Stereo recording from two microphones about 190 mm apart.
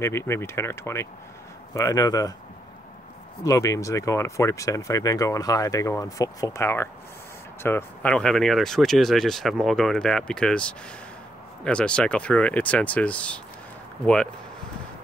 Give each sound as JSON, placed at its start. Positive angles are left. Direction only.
{"t": 0.0, "sound": "speech", "side_deg": 15}
{"t": 3.4, "sound": "speech", "side_deg": 15}